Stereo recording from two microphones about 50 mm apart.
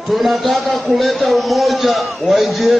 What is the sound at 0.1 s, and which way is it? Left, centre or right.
A man's voice, centre.